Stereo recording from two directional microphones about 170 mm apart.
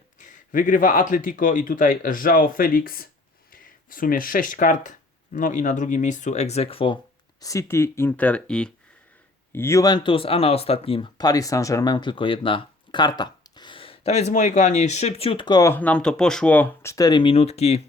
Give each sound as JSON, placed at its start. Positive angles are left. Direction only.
{"t": 0.2, "sound": "a man's voice", "side_deg": 50}
{"t": 7.4, "sound": "speech", "side_deg": 15}
{"t": 15.7, "sound": "speech", "side_deg": 10}